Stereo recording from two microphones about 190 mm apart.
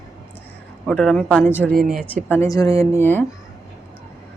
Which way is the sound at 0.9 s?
5° left (ahead or behind).